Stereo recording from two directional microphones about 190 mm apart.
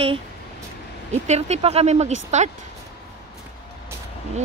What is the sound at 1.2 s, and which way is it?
Speech, 35° right (ahead or behind).